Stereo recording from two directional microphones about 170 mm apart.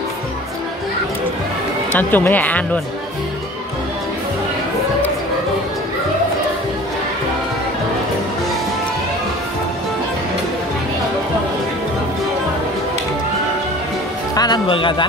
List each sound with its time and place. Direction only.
1.9 s speech: 10° left (ahead or behind)
14.3 s speech: 25° left (ahead or behind)